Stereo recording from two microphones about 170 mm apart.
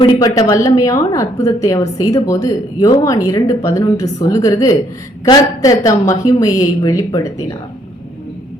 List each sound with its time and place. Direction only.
0.0 s a woman's voice: 20° left (ahead or behind)